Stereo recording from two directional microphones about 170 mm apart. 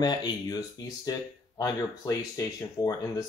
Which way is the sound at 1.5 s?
20° left (ahead or behind).